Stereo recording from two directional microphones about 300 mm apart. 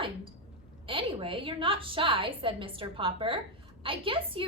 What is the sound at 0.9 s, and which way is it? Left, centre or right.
A woman's voice, centre.